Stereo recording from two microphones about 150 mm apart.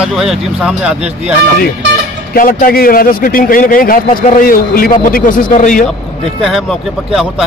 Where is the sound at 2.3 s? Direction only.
70° left (ahead or behind).